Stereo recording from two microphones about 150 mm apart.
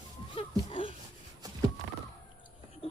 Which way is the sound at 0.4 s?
40° left (ahead or behind).